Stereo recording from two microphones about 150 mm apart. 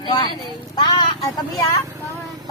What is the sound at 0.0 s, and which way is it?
Speech, 30° left (ahead or behind).